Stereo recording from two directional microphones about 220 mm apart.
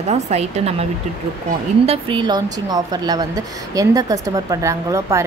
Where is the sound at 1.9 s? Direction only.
20° right (ahead or behind).